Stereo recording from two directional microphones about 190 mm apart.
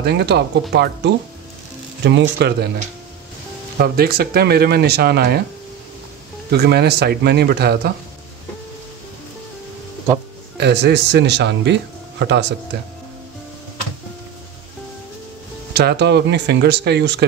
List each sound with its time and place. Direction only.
0.0 s speech: 60° right (ahead or behind)
3.7 s speech: 55° right (ahead or behind)
6.5 s speech: 55° right (ahead or behind)
10.6 s speech: 60° right (ahead or behind)
15.7 s speech: 55° right (ahead or behind)